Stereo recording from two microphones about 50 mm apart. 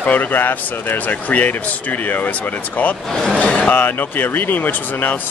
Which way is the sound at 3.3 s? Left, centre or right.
Left.